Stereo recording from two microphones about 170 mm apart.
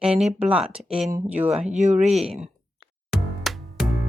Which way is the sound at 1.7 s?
45° right (ahead or behind).